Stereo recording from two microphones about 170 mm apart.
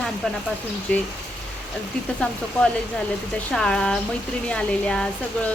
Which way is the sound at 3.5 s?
5° left (ahead or behind).